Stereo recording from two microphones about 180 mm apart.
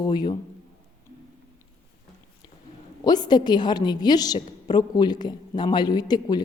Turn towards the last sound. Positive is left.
turn(degrees=20)  # may be behind; listen again after turning